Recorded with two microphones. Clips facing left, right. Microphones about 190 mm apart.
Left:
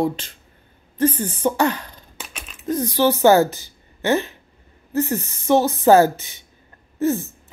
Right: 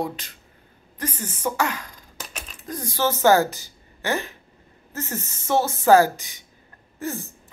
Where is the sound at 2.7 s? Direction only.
20° left (ahead or behind).